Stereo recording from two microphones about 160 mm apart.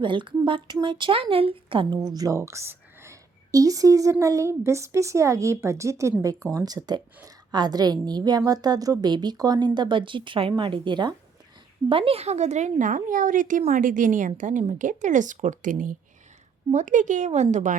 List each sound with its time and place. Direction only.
0.0 s speech: 30° right (ahead or behind)
2.1 s a woman's voice: 20° right (ahead or behind); by 17.7 s 50° right (ahead or behind)